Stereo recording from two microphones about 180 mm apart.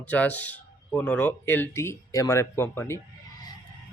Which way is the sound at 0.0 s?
10° left (ahead or behind).